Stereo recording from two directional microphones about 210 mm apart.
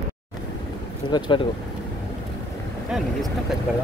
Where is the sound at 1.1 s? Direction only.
20° left (ahead or behind).